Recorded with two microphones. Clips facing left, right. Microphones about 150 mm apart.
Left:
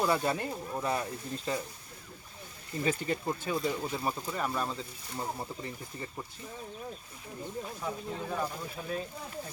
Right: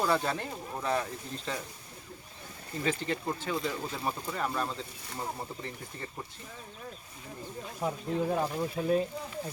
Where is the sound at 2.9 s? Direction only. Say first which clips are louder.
Even; 10° left (ahead or behind).